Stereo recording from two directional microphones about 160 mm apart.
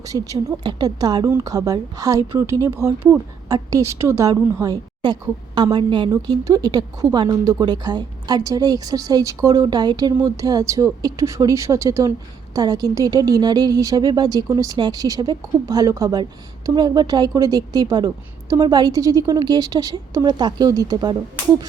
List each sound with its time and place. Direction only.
0.0 s speech: 20° right (ahead or behind)